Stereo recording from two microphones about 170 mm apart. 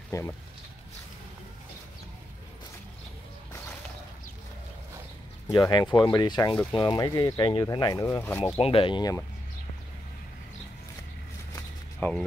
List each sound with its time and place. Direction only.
0.1 s speech: 15° left (ahead or behind)
5.5 s speech: 20° left (ahead or behind)
8.5 s speech: 35° left (ahead or behind)
12.0 s speech: 15° left (ahead or behind)